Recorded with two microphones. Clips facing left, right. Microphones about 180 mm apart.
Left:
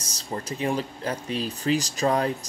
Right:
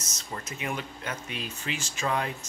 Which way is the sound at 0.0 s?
30° left (ahead or behind).